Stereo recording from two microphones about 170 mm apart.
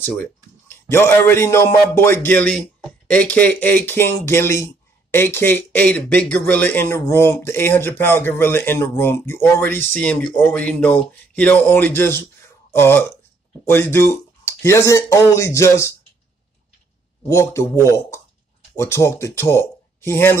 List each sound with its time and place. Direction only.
0.0 s speech: 10° left (ahead or behind)
17.3 s speech: 15° left (ahead or behind)